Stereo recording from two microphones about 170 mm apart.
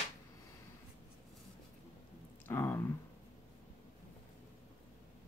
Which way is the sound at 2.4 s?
15° left (ahead or behind).